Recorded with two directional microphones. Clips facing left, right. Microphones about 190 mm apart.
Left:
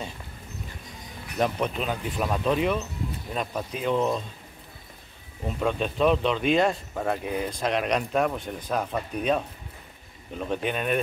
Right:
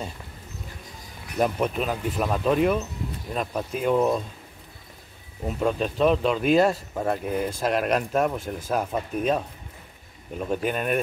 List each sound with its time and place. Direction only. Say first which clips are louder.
1.4 s speech: right 2 dB; 5° right (ahead or behind)
5.5 s speech: right 2 dB; 5° right (ahead or behind)
10.4 s speech: right 2 dB; 5° right (ahead or behind)